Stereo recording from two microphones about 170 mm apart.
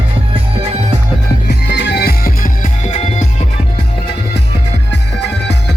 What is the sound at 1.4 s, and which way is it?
Music, 85° left.